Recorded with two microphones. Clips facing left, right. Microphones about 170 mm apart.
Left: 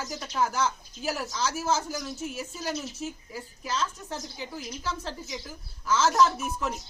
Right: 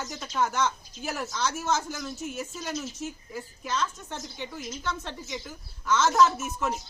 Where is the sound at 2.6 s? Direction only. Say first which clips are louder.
Left 3 dB; 35° left (ahead or behind).